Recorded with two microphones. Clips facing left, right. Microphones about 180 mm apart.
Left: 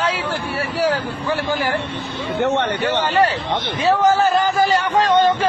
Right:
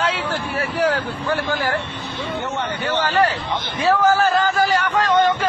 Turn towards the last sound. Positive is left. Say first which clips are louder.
# left 2 dB
turn(degrees=30)  # may be behind; listen again after turning